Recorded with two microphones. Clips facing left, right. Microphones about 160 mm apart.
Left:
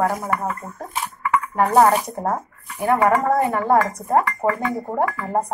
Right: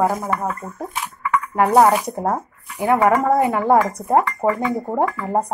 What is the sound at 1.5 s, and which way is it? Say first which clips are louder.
A woman's voice: right 2 dB; 10° right (ahead or behind).